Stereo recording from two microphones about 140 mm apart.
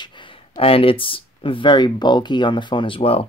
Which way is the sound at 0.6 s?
40° left (ahead or behind).